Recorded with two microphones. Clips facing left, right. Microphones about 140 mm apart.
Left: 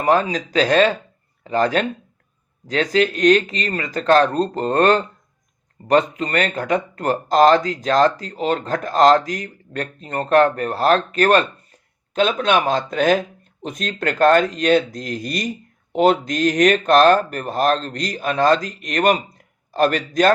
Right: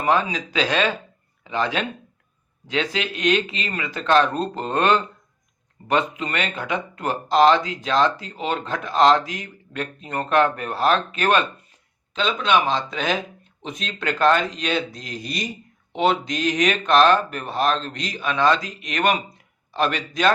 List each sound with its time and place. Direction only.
0.0 s speech: 35° left (ahead or behind)
12.1 s speech: 55° left (ahead or behind)